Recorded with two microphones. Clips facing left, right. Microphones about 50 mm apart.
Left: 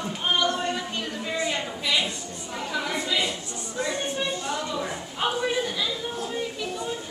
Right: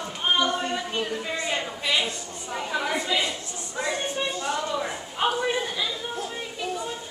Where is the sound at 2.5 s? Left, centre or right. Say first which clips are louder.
Right 2 dB; centre.